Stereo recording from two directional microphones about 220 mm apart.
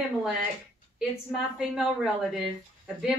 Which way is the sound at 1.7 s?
Centre (ahead or behind).